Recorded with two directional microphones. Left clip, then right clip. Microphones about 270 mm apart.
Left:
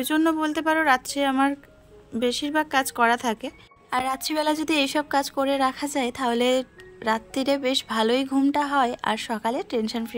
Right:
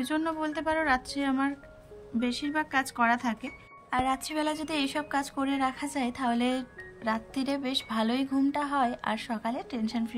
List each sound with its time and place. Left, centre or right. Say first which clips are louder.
0.0 s speech: left 8 dB; centre